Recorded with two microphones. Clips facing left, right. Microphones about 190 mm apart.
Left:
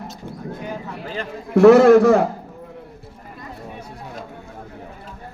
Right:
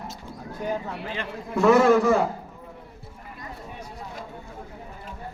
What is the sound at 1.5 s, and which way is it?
Speech, 70° left (ahead or behind).